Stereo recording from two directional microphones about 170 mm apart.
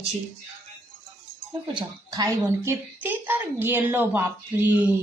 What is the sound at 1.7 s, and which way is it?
A woman's voice, 20° right (ahead or behind).